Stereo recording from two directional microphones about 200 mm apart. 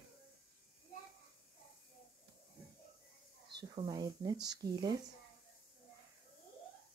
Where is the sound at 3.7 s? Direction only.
20° right (ahead or behind).